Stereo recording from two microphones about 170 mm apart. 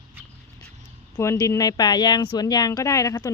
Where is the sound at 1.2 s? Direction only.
15° left (ahead or behind).